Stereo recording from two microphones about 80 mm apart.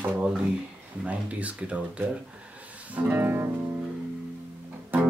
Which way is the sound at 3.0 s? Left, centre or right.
Right.